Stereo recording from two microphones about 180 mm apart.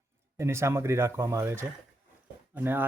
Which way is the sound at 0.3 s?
15° right (ahead or behind).